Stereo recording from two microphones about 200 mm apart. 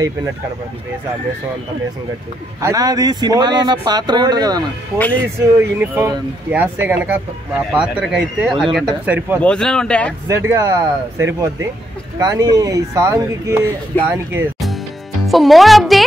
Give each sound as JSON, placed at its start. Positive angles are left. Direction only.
{"t": 2.6, "sound": "speech", "side_deg": -15}
{"t": 4.9, "sound": "a man's voice", "side_deg": 10}
{"t": 5.6, "sound": "speech", "side_deg": -10}
{"t": 9.4, "sound": "speech", "side_deg": 5}
{"t": 10.2, "sound": "speech", "side_deg": -15}
{"t": 15.2, "sound": "speech", "side_deg": 0}